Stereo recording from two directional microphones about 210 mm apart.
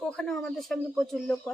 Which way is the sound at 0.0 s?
5° left (ahead or behind).